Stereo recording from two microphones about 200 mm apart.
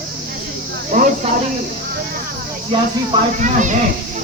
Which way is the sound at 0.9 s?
40° right (ahead or behind).